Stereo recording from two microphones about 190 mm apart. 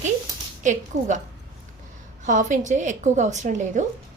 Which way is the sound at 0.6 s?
40° right (ahead or behind).